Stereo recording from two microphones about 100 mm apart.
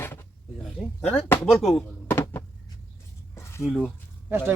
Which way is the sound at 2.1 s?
20° left (ahead or behind).